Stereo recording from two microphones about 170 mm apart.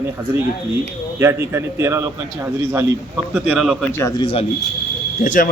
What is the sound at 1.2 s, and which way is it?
A man's voice, 15° right (ahead or behind).